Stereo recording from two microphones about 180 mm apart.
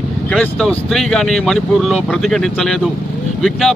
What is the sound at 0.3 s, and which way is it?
Speech, 5° left (ahead or behind).